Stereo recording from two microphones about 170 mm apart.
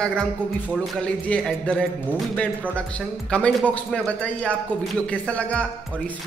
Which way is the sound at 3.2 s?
5° left (ahead or behind).